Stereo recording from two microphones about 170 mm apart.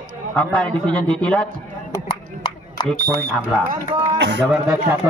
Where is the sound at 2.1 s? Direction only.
25° left (ahead or behind).